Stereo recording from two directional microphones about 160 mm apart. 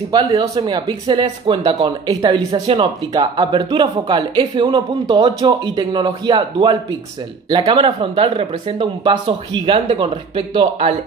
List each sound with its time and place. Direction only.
0.1 s speech: 25° right (ahead or behind)
2.5 s speech: 40° right (ahead or behind)
3.1 s speech: 25° right (ahead or behind)